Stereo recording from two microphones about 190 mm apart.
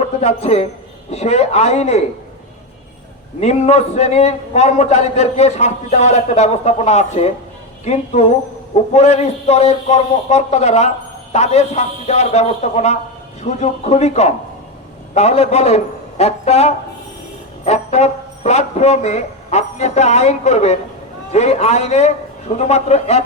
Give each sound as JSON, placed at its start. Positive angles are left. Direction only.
{"t": 0.2, "sound": "a man's voice", "side_deg": 35}
{"t": 3.4, "sound": "a man's voice", "side_deg": 35}